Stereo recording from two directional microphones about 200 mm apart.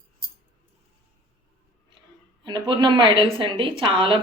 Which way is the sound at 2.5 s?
25° right (ahead or behind).